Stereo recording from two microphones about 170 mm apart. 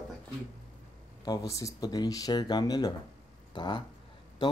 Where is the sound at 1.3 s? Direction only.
20° left (ahead or behind).